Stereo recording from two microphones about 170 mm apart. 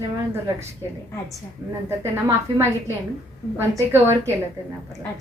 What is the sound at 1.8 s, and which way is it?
Speech, 15° right (ahead or behind).